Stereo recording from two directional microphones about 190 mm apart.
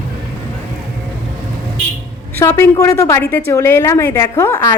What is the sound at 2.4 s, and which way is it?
A woman's voice, 15° left (ahead or behind).